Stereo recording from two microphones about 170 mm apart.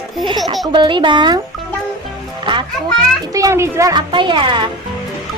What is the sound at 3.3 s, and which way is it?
Speech, 15° right (ahead or behind).